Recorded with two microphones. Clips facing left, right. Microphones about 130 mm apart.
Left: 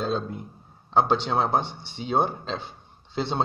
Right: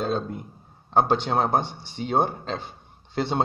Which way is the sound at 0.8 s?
50° right (ahead or behind).